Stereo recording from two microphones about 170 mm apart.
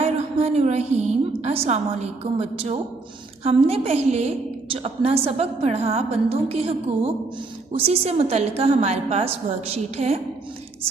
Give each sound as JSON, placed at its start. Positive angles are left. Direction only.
{"t": 0.0, "sound": "a woman's voice", "side_deg": -40}